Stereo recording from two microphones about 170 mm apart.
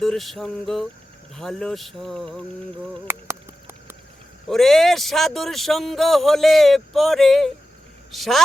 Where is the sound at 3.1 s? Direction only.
15° right (ahead or behind).